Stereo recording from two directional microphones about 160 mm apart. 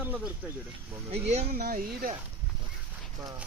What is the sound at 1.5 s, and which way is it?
Speech, 70° right (ahead or behind).